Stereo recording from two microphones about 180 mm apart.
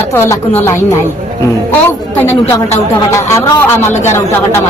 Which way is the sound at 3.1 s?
15° left (ahead or behind).